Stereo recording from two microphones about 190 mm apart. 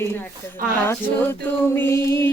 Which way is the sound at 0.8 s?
10° left (ahead or behind).